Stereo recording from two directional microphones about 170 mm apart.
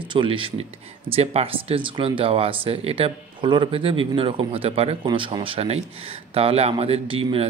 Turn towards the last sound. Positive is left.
turn(degrees=-30)  # may be behind; listen again after turning